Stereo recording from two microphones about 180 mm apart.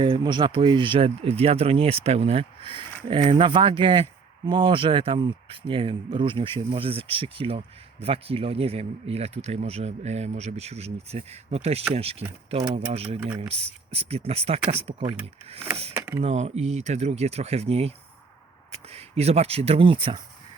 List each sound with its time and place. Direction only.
0.0 s speech: 25° right (ahead or behind)
16.0 s a sound: 15° right (ahead or behind)
16.2 s speech: 35° right (ahead or behind)